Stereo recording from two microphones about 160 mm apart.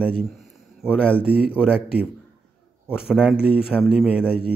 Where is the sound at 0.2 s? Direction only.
Centre (ahead or behind).